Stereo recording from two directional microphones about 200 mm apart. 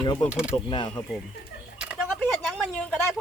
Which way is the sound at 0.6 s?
25° left (ahead or behind).